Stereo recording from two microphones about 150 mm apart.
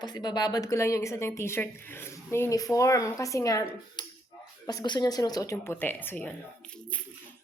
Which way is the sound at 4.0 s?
30° left (ahead or behind).